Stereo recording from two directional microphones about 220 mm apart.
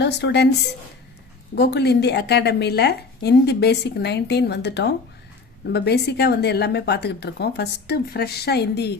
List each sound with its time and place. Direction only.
0.0 s speech: 50° left (ahead or behind)
1.5 s a woman's voice: 50° left (ahead or behind)